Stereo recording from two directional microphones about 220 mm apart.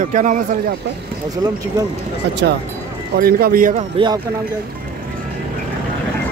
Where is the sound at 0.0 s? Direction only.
35° right (ahead or behind).